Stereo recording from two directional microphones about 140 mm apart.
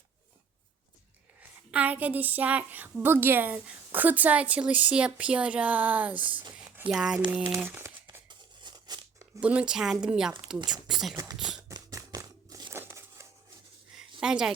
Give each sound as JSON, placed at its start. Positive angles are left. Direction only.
{"t": 1.4, "sound": "a woman's voice", "side_deg": -10}
{"t": 7.4, "sound": "speech", "side_deg": -20}
{"t": 8.3, "sound": "tearing", "side_deg": -30}
{"t": 9.4, "sound": "speech", "side_deg": -10}
{"t": 11.3, "sound": "beatboxing", "side_deg": -5}
{"t": 11.7, "sound": "a sound", "side_deg": -25}
{"t": 14.2, "sound": "speech", "side_deg": -5}